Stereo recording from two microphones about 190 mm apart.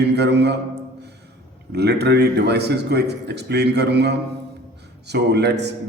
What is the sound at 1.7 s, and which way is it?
A man's voice, 60° right (ahead or behind).